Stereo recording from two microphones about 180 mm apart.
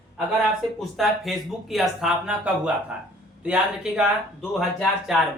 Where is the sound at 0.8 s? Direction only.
Centre (ahead or behind).